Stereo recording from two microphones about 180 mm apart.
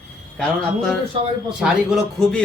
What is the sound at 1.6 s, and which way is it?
Speech, 5° right (ahead or behind).